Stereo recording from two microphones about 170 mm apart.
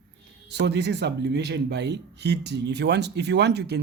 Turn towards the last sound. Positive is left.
turn(degrees=-75)  # may be behind; listen again after turning